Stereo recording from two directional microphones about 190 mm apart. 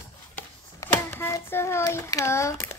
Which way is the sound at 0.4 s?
10° left (ahead or behind).